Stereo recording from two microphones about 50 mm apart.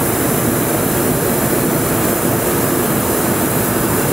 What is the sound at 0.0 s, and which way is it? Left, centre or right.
Vehicle, centre.